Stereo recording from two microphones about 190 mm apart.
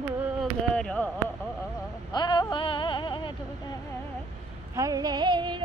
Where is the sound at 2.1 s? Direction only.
25° left (ahead or behind).